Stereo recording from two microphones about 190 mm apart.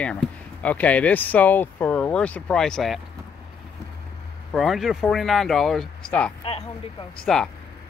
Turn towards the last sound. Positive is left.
turn(degrees=5)  # may be behind; listen again after turning